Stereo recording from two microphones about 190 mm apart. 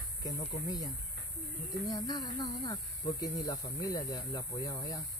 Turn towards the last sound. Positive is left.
turn(degrees=20)  # may be behind; listen again after turning